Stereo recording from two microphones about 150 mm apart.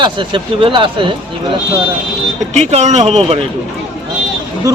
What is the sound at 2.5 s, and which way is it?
Speech, 50° right (ahead or behind).